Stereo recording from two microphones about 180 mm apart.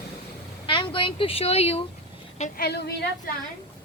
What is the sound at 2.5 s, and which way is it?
Speech, 65° left (ahead or behind).